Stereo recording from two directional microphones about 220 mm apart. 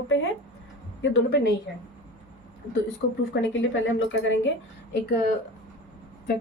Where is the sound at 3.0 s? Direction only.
55° left (ahead or behind).